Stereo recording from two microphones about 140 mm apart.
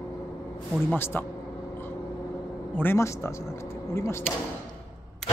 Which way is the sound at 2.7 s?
15° left (ahead or behind).